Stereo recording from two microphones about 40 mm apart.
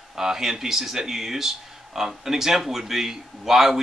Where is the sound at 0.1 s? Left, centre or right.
Centre.